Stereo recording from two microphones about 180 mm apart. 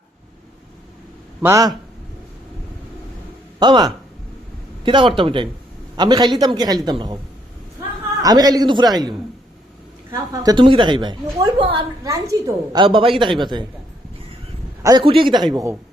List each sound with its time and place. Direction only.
1.4 s a man's voice: 15° right (ahead or behind)
3.6 s a woman's voice: 25° right (ahead or behind)
8.2 s a woman's voice: 20° right (ahead or behind)
12.0 s a woman's voice: 20° right (ahead or behind)
14.8 s a woman's voice: 25° right (ahead or behind)